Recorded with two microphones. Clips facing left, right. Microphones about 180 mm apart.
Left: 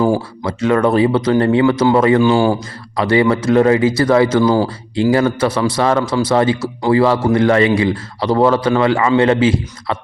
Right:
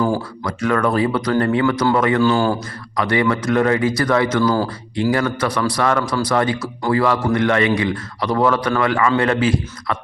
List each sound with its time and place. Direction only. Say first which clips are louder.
0.2 s a man's voice: left 3 dB; 25° left (ahead or behind)
2.2 s speech: left 4 dB; 15° left (ahead or behind)
2.9 s a man's voice: left 5 dB; 30° left (ahead or behind)